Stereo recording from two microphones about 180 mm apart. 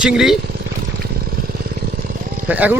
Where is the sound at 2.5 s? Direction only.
10° right (ahead or behind).